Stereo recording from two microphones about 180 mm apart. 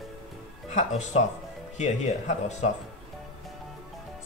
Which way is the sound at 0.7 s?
40° left (ahead or behind).